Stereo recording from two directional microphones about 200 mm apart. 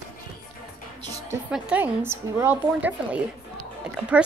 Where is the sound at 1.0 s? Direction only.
15° right (ahead or behind).